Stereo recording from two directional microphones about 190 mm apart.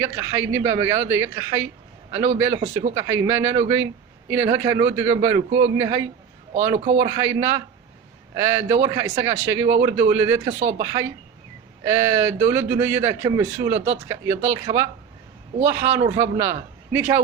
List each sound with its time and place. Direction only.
0.0 s speech: 15° right (ahead or behind)
6.7 s a man's voice: 40° right (ahead or behind)
7.0 s speech: 15° right (ahead or behind)